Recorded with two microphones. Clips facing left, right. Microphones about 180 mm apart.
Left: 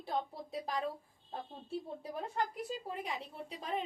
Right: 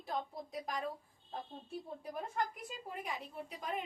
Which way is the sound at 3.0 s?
30° left (ahead or behind).